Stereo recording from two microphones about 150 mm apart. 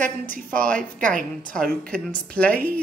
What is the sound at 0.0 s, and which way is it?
Speech, 65° right (ahead or behind).